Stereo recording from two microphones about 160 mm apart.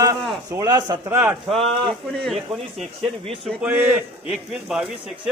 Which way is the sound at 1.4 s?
Centre (ahead or behind).